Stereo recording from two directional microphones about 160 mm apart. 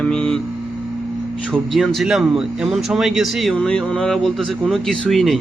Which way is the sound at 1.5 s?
Centre (ahead or behind).